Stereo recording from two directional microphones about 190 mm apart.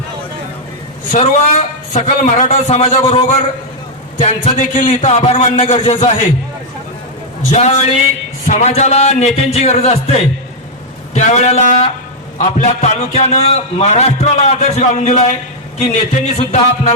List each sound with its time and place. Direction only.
1.1 s a man's voice: 40° left (ahead or behind)
4.2 s a man's voice: 40° left (ahead or behind)
8.4 s a man's voice: 35° left (ahead or behind)